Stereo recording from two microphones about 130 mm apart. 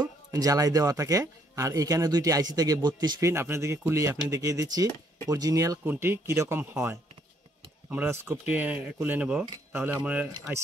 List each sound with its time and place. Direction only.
0.0 s speech: 30° right (ahead or behind); by 10.3 s 15° right (ahead or behind)